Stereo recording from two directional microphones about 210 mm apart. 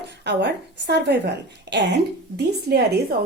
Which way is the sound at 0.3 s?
55° right (ahead or behind).